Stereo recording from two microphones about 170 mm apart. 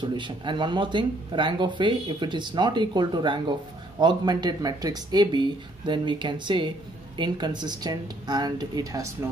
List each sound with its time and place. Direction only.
0.0 s speech: 25° right (ahead or behind)